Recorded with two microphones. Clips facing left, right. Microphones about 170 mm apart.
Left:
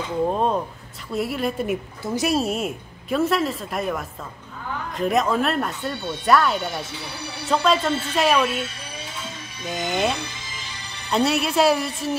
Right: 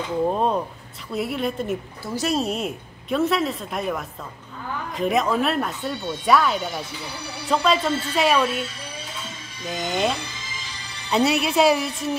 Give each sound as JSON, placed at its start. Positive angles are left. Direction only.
{"t": 0.3, "sound": "speech", "side_deg": 0}
{"t": 2.0, "sound": "a woman's voice", "side_deg": 15}
{"t": 2.3, "sound": "speech", "side_deg": 5}
{"t": 9.7, "sound": "speech", "side_deg": 5}